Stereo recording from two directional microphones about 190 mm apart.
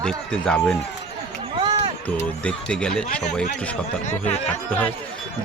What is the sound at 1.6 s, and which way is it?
Music, 25° right (ahead or behind).